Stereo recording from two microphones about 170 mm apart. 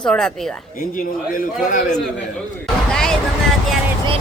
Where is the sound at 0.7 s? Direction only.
50° left (ahead or behind).